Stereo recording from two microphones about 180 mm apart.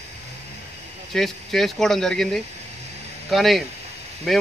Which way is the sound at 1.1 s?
Centre (ahead or behind).